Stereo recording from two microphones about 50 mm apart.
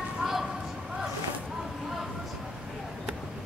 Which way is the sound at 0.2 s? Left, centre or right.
Centre.